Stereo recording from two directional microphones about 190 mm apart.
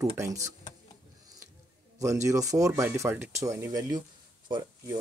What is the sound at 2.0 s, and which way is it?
Speech, 15° right (ahead or behind).